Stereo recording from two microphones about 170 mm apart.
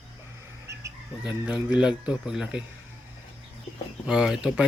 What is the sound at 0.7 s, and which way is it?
Speech, 15° right (ahead or behind).